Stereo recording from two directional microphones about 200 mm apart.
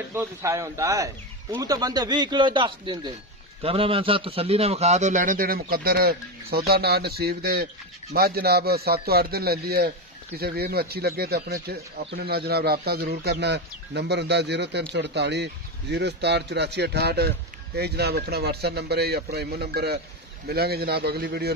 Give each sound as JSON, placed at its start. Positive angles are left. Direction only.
{"t": 0.1, "sound": "a man's voice", "side_deg": -15}